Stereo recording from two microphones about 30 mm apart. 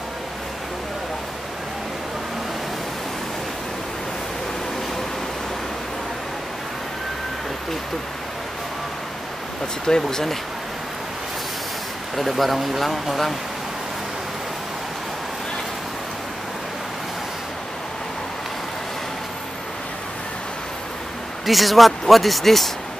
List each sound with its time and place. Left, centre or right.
9.8 s speech: centre
12.2 s speech: centre
21.5 s speech: centre